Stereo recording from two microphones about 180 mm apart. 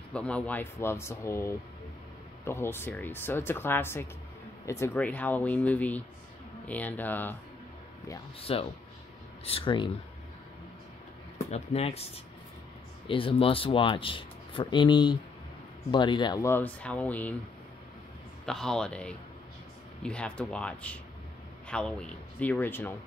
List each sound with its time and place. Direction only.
0.1 s speech: 5° left (ahead or behind)
8.4 s speech: 30° left (ahead or behind)
11.3 s speech: 35° left (ahead or behind); by 17.4 s 10° left (ahead or behind)
18.4 s speech: 5° left (ahead or behind)